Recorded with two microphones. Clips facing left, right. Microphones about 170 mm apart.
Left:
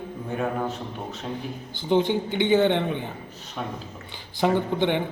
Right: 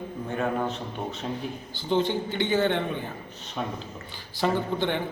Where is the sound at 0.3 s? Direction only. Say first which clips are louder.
Even; 5° left (ahead or behind).